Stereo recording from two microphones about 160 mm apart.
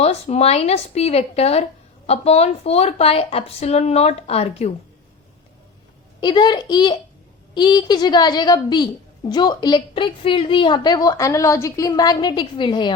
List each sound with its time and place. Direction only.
0.0 s speech: 40° left (ahead or behind)
6.2 s a woman's voice: 30° left (ahead or behind)